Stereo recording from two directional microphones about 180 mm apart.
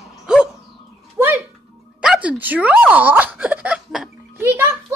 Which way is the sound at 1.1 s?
10° right (ahead or behind).